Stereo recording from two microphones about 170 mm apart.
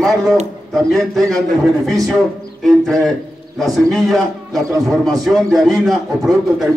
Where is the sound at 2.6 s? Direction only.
Centre (ahead or behind).